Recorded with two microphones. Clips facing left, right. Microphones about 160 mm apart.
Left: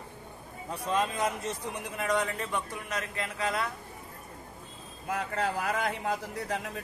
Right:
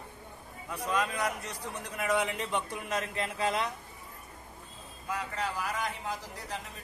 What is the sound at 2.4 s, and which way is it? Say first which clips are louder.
A man's voice: right 1 dB; 25° right (ahead or behind).